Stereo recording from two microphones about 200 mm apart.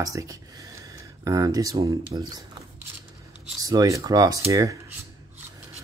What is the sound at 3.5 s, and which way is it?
Speech, 20° right (ahead or behind).